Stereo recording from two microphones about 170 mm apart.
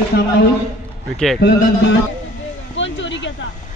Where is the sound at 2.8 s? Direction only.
90° left.